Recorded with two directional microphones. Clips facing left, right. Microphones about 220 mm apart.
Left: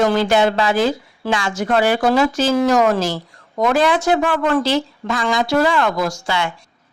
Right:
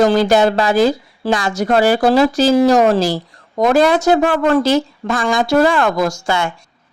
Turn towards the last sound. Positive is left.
turn(degrees=-45)  # may be behind; listen again after turning